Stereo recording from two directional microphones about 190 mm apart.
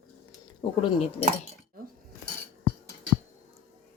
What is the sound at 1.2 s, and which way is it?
Speech, 35° left (ahead or behind).